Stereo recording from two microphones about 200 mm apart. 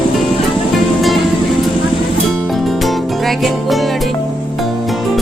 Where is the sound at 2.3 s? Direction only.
Centre (ahead or behind).